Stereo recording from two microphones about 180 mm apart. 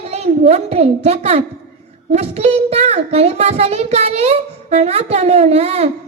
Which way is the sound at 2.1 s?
35° right (ahead or behind).